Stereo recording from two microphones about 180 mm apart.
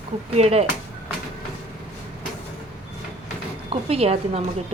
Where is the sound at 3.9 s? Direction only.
35° right (ahead or behind).